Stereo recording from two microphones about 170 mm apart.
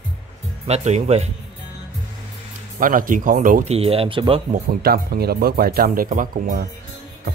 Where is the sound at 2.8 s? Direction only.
55° right (ahead or behind).